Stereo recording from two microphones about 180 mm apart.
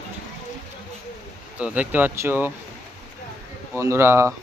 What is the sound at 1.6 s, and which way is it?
Speech, 10° right (ahead or behind).